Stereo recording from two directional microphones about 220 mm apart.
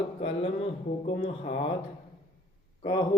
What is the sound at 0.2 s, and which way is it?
Speech, 25° left (ahead or behind).